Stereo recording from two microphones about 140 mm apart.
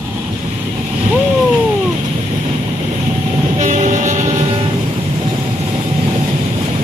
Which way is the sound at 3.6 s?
60° right (ahead or behind).